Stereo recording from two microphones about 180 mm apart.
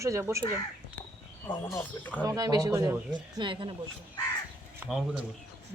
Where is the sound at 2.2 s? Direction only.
20° right (ahead or behind).